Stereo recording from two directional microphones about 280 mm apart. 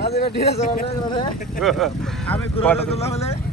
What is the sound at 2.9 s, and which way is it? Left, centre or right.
Speech, left.